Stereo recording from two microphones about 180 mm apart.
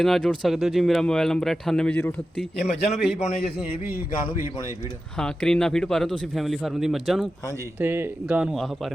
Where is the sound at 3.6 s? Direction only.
10° right (ahead or behind).